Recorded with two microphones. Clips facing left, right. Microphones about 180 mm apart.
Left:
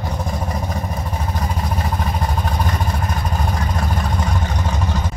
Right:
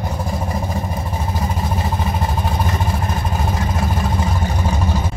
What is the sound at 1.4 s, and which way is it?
Vehicle, centre (ahead or behind).